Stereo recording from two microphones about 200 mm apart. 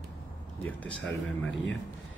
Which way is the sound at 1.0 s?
65° left (ahead or behind).